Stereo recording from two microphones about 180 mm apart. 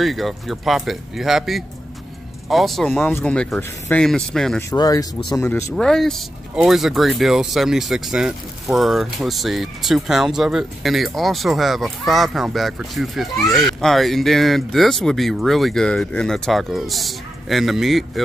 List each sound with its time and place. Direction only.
0.0 s speech: centre (ahead or behind)
3.0 s speech: 10° left (ahead or behind)
4.6 s speech: 20° left (ahead or behind); by 18.2 s centre (ahead or behind)